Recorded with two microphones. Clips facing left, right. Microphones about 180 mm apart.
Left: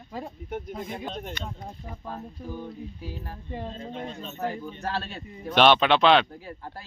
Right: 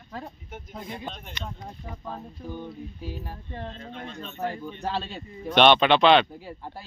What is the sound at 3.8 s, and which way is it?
Speech, 30° left (ahead or behind).